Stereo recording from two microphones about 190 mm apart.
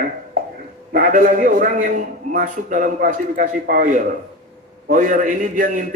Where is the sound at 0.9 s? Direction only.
50° right (ahead or behind).